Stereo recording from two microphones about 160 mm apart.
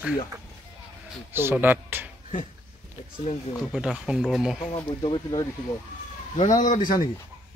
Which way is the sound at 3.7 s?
5° right (ahead or behind).